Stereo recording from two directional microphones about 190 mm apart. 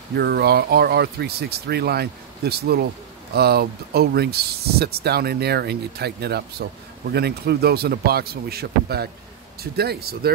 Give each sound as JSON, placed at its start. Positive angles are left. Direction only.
{"t": 0.2, "sound": "speech", "side_deg": -55}